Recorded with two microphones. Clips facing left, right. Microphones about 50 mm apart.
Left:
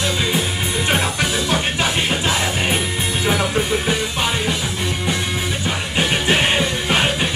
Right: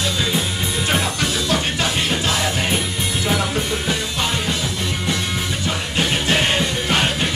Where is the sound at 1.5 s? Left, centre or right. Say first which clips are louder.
Left 1 dB; left.